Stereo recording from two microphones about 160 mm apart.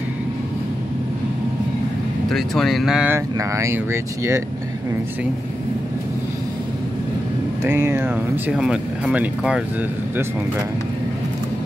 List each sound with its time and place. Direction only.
2.2 s speech: centre (ahead or behind)
3.3 s speech: 20° right (ahead or behind)
7.6 s speech: 15° right (ahead or behind)